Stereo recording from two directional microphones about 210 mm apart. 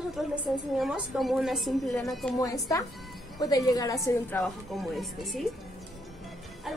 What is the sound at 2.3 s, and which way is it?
A woman's voice, 15° left (ahead or behind).